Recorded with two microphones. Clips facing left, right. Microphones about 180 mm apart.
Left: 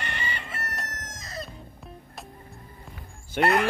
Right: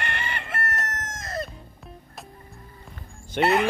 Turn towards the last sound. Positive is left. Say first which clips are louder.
# right 1 dB
turn(degrees=0)  # may be behind; listen again after turning